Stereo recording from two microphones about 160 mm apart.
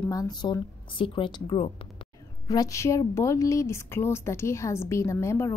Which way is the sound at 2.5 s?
20° left (ahead or behind).